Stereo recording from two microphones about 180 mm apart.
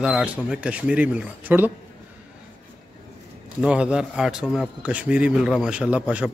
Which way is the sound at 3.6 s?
5° right (ahead or behind).